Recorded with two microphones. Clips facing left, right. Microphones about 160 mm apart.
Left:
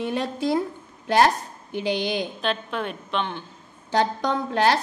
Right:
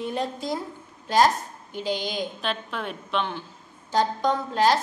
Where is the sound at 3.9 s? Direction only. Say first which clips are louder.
Even; 65° left (ahead or behind).